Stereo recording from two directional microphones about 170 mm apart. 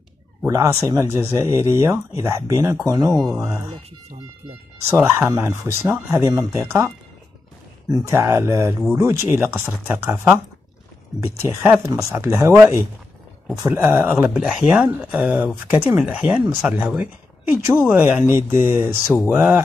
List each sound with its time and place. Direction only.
0.5 s speech: 15° right (ahead or behind)
3.1 s speech: centre (ahead or behind)
4.9 s speech: 15° right (ahead or behind)
7.9 s speech: 15° right (ahead or behind)